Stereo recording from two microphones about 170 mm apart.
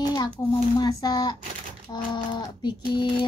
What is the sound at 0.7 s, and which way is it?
Speech, 25° left (ahead or behind).